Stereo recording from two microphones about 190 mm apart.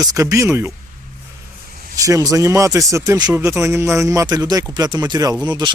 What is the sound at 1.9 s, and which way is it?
Speech, 15° right (ahead or behind).